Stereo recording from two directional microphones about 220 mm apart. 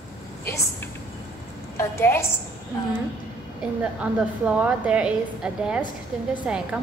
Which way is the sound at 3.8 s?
5° right (ahead or behind).